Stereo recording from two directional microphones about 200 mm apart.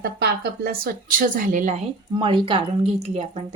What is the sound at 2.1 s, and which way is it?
Speech, 25° right (ahead or behind).